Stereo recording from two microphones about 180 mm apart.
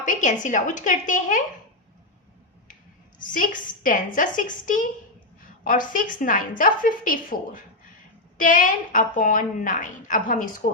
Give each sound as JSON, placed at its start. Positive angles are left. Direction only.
{"t": 0.0, "sound": "a woman's voice", "side_deg": 45}
{"t": 3.2, "sound": "a woman's voice", "side_deg": 50}